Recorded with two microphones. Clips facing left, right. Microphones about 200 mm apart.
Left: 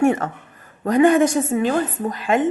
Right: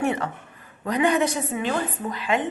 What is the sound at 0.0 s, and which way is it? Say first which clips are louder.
A woman's voice: left 7 dB; 45° left (ahead or behind).